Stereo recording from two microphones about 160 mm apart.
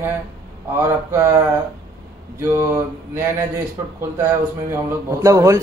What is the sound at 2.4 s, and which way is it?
A man's voice, 15° right (ahead or behind).